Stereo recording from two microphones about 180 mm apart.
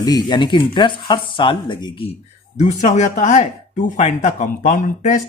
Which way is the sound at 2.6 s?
40° left (ahead or behind).